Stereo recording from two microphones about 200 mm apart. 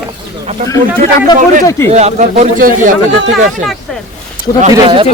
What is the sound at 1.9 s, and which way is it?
Speech, 35° right (ahead or behind).